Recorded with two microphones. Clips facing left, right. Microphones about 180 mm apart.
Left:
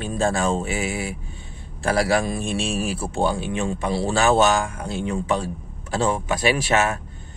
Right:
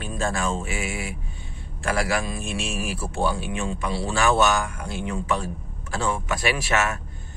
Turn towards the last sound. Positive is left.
turn(degrees=30)  # may be behind; listen again after turning